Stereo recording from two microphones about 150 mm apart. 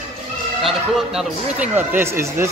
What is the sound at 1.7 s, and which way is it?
Speech, 15° right (ahead or behind).